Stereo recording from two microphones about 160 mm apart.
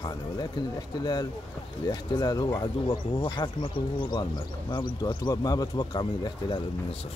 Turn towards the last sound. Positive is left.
turn(degrees=30)  # may be behind; listen again after turning